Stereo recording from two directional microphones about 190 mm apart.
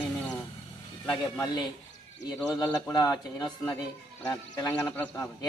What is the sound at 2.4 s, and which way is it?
A man's voice, 15° left (ahead or behind).